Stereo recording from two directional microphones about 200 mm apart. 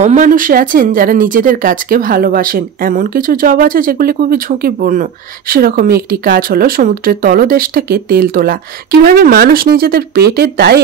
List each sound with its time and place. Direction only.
0.0 s speech: 40° right (ahead or behind)